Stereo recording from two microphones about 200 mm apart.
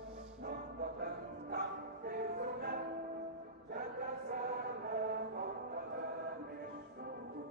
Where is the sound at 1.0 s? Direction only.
50° right (ahead or behind).